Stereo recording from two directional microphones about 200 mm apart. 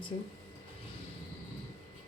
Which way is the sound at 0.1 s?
30° left (ahead or behind).